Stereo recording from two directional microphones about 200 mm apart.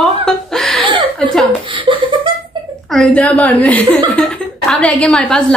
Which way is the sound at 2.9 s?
5° left (ahead or behind).